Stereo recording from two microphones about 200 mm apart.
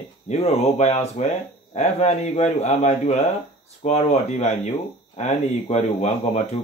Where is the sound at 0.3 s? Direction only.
35° left (ahead or behind).